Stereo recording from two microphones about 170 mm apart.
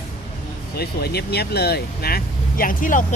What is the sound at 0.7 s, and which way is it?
Speech, 70° left (ahead or behind).